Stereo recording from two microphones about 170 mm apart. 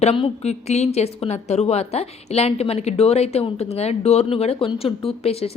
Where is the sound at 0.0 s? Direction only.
40° left (ahead or behind).